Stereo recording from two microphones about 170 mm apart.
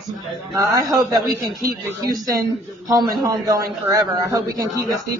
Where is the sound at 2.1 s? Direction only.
20° right (ahead or behind).